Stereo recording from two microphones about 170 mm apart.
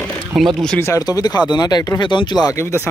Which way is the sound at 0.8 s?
20° left (ahead or behind).